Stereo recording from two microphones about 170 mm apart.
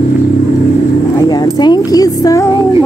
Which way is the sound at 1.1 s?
25° left (ahead or behind).